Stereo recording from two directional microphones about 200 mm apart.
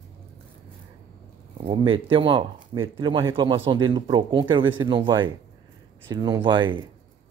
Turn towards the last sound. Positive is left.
turn(degrees=-25)  # may be behind; listen again after turning